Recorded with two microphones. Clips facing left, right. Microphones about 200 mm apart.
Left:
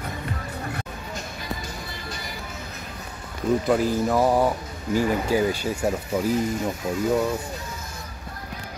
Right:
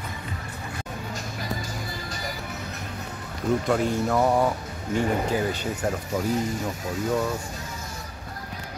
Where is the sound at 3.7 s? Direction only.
5° left (ahead or behind).